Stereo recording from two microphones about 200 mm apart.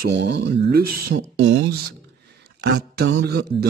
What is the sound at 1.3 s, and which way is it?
Speech, 70° right (ahead or behind).